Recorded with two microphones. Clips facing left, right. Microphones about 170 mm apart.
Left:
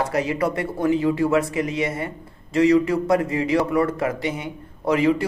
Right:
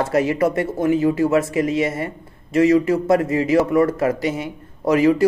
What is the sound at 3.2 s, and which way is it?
Speech, 25° left (ahead or behind).